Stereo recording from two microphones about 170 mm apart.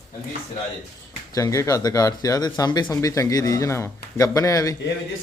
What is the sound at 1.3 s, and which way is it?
Speech, 20° left (ahead or behind).